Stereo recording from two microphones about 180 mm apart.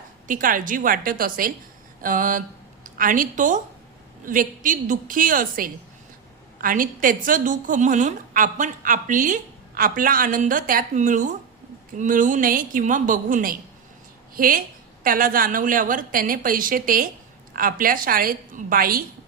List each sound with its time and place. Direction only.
0.3 s a woman's voice: 50° right (ahead or behind)